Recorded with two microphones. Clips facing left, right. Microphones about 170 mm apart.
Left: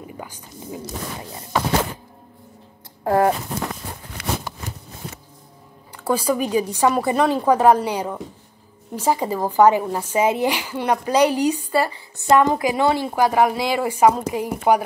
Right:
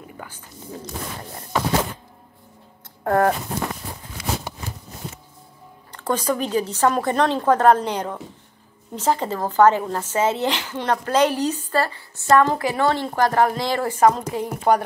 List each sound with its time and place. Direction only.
0.2 s speech: 15° left (ahead or behind)
3.0 s speech: 5° left (ahead or behind)
4.2 s a sound: 60° left (ahead or behind)
5.9 s speech: 10° left (ahead or behind)